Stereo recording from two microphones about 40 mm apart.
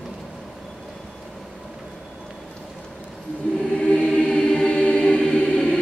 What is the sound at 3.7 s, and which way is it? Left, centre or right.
Choir, left.